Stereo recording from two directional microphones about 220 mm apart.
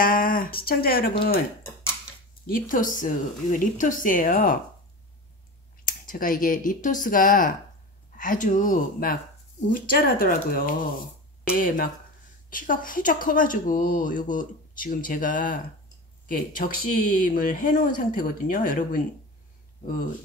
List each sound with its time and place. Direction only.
0.0 s speech: 40° left (ahead or behind)
2.7 s speech: 35° left (ahead or behind)
6.0 s speech: 40° left (ahead or behind)